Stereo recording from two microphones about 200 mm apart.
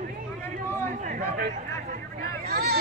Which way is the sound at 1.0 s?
40° right (ahead or behind).